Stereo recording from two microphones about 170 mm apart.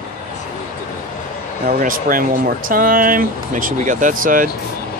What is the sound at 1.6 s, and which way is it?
Speech, 55° right (ahead or behind).